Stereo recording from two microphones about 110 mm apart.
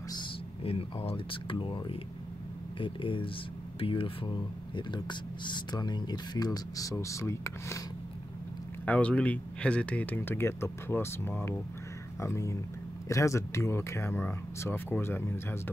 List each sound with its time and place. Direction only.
0.7 s speech: 60° left (ahead or behind); by 7.8 s 25° left (ahead or behind)
8.8 s speech: 10° left (ahead or behind)